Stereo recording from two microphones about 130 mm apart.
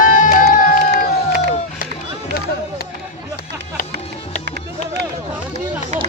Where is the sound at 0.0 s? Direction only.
90° left.